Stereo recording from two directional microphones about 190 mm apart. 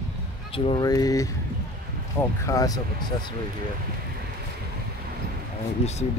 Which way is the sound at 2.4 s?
15° left (ahead or behind).